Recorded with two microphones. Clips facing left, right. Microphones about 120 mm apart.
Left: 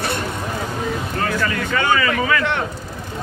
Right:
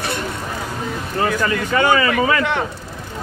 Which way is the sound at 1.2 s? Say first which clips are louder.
Right 5 dB; 20° right (ahead or behind).